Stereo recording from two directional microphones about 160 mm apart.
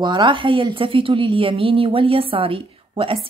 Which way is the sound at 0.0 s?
30° right (ahead or behind).